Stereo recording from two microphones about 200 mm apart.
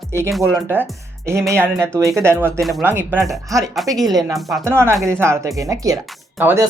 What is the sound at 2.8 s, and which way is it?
Speech, 10° right (ahead or behind).